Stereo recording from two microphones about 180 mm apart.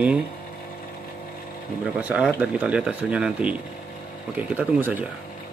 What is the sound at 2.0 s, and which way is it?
Speech, 5° right (ahead or behind).